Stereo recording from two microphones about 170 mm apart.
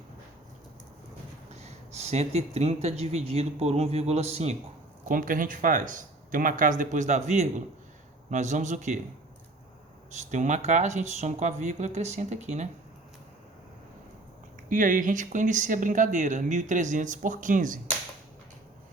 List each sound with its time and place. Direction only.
1.5 s speech: 40° right (ahead or behind)
5.0 s speech: 50° right (ahead or behind)
10.1 s speech: 45° right (ahead or behind)
14.7 s speech: 50° right (ahead or behind)